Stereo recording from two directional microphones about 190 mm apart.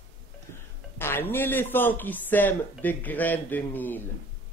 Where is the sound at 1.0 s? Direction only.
10° left (ahead or behind).